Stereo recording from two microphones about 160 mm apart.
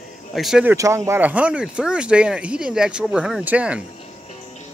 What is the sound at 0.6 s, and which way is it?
Speech, 20° right (ahead or behind).